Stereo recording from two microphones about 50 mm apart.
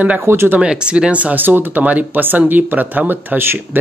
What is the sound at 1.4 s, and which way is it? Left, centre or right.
Speech, right.